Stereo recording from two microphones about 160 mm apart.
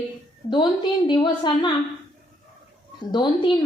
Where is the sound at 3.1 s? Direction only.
30° left (ahead or behind).